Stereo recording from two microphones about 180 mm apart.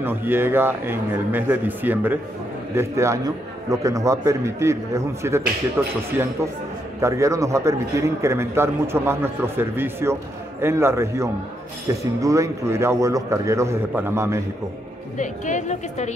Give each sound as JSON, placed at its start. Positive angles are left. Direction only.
{"t": 0.0, "sound": "a man's voice", "side_deg": -10}
{"t": 7.0, "sound": "a man's voice", "side_deg": -15}
{"t": 15.1, "sound": "a woman's voice", "side_deg": 45}